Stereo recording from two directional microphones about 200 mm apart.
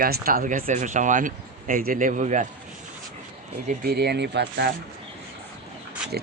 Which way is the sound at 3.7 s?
45° right (ahead or behind).